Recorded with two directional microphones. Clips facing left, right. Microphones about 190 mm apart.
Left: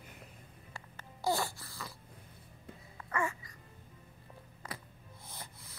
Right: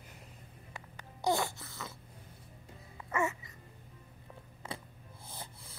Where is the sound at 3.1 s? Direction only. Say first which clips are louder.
Right 2 dB; 25° right (ahead or behind).